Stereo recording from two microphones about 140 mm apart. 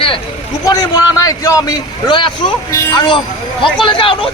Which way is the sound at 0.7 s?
25° left (ahead or behind).